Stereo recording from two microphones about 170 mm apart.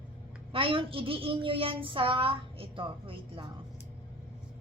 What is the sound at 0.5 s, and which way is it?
A woman's voice, 30° right (ahead or behind).